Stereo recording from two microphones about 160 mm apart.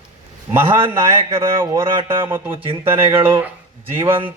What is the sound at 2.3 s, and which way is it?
Speech, 15° right (ahead or behind).